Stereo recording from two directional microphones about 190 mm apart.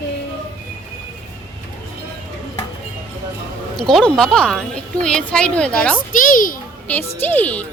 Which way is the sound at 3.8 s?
Centre (ahead or behind).